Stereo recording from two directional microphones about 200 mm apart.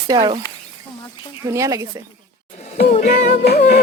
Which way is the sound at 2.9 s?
35° left (ahead or behind).